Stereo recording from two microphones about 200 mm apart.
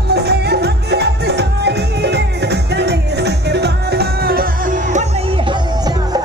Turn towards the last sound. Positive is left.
turn(degrees=-35)  # may be behind; listen again after turning